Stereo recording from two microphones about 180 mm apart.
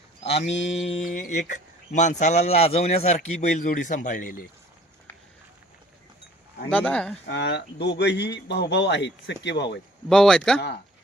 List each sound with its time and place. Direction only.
0.7 s mantra: 35° left (ahead or behind)
1.1 s speech: 45° left (ahead or behind)
6.7 s speech: 5° left (ahead or behind)
7.3 s speech: 75° left (ahead or behind)
10.1 s speech: 5° left (ahead or behind)